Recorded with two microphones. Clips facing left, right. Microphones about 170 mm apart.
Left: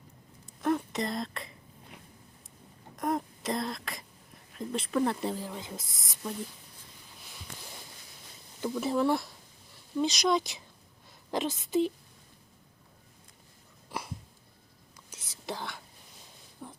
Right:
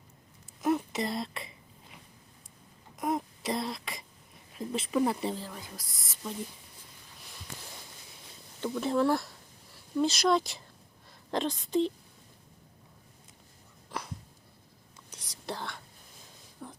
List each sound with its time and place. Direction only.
0.6 s speech: 5° right (ahead or behind)
2.9 s throat clearing: 5° right (ahead or behind)
4.5 s speech: 5° right (ahead or behind)
5.4 s speech: 20° left (ahead or behind)
7.3 s a sound: centre (ahead or behind)
8.6 s speech: 5° left (ahead or behind)
13.9 s dog: 10° left (ahead or behind)
15.1 s whispering: centre (ahead or behind)
16.6 s a sound: 5° left (ahead or behind)